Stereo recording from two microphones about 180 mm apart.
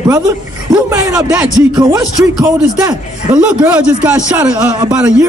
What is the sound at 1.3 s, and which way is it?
Speech, 5° right (ahead or behind).